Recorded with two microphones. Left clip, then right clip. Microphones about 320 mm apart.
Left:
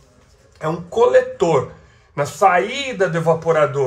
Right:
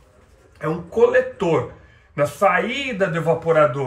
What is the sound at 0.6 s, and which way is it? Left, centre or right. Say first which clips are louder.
Speech: even; centre.